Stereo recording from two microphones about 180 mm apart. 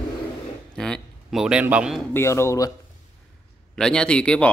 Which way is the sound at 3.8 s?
5° left (ahead or behind).